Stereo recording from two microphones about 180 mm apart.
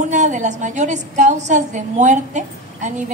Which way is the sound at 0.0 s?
40° right (ahead or behind).